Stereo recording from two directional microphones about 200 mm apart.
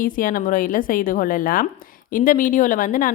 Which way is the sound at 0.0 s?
45° left (ahead or behind).